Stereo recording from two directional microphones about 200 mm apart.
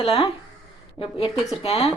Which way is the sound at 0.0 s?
30° left (ahead or behind).